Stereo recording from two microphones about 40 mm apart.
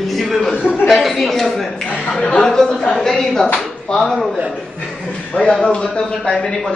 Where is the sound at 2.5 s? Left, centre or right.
Centre.